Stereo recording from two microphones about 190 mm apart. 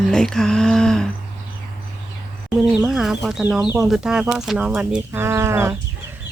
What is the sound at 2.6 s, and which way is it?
Speech, centre (ahead or behind).